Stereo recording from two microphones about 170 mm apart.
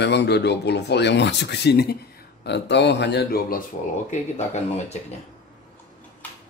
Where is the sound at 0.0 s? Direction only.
90° left; by 2.0 s 75° left (ahead or behind).